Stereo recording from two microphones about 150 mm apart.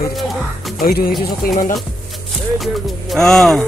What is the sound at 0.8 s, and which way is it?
Speech, 75° left (ahead or behind).